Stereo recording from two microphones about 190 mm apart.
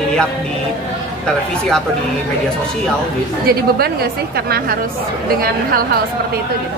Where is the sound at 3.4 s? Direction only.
55° right (ahead or behind).